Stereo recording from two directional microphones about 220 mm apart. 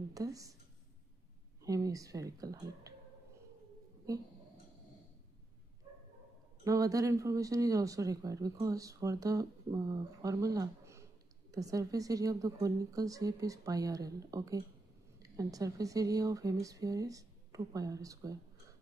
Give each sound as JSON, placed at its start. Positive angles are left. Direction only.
{"t": 0.1, "sound": "speech", "side_deg": -15}
{"t": 1.6, "sound": "speech", "side_deg": -15}
{"t": 6.6, "sound": "speech", "side_deg": -15}